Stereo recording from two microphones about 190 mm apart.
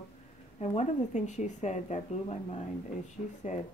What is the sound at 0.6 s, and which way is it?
Speech, 40° left (ahead or behind).